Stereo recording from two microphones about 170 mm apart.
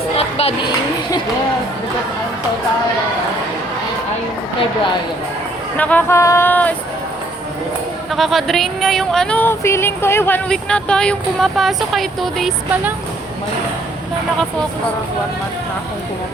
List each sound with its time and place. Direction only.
0.2 s a sound: 35° left (ahead or behind)
5.7 s speech: 10° left (ahead or behind)
8.1 s speech: centre (ahead or behind)